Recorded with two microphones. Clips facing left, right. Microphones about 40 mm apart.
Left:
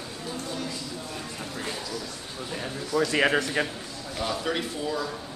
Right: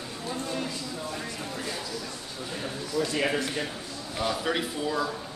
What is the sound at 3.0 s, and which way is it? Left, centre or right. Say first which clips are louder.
Speech: left 4 dB; left.